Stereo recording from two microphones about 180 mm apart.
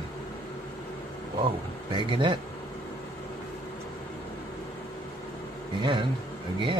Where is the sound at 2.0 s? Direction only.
30° right (ahead or behind).